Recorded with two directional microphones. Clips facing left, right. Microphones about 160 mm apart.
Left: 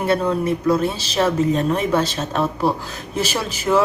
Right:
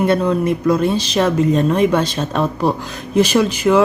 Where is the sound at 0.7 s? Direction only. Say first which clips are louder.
Right 5 dB; 5° left (ahead or behind).